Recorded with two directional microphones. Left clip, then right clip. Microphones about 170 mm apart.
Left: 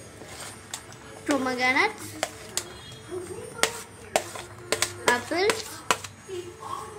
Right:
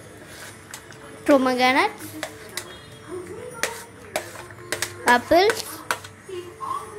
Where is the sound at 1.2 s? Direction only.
35° right (ahead or behind).